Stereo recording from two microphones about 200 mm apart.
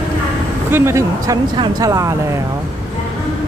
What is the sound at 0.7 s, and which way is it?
Speech, 15° right (ahead or behind).